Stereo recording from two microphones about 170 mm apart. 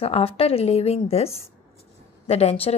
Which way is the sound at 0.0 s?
35° left (ahead or behind).